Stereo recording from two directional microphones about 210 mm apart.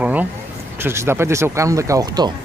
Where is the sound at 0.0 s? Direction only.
10° right (ahead or behind).